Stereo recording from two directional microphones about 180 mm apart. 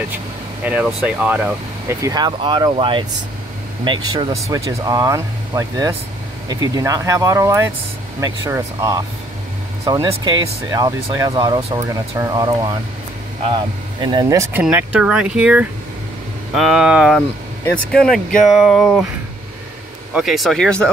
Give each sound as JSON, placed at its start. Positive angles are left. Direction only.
{"t": 0.7, "sound": "speech", "side_deg": -5}
{"t": 13.9, "sound": "speech", "side_deg": -25}
{"t": 20.2, "sound": "speech", "side_deg": 0}